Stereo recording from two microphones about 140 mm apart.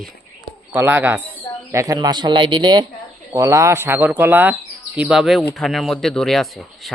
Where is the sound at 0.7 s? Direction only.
15° right (ahead or behind); by 2.9 s 35° right (ahead or behind).